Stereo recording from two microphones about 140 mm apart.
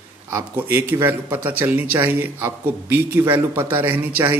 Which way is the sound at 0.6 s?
15° right (ahead or behind).